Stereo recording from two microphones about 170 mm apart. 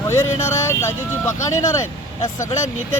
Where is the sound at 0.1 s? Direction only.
15° left (ahead or behind).